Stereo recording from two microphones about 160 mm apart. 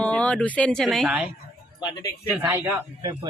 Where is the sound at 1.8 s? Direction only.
20° left (ahead or behind).